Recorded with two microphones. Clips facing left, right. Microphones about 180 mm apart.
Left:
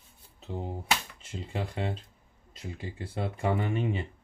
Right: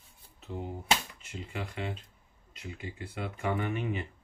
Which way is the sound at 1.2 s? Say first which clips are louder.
Left 3 dB; 30° left (ahead or behind).